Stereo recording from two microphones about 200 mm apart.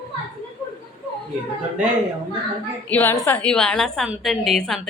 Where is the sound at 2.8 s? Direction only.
10° left (ahead or behind).